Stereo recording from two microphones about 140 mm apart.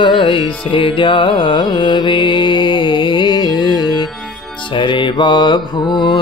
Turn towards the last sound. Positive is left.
turn(degrees=30)  # may be behind; listen again after turning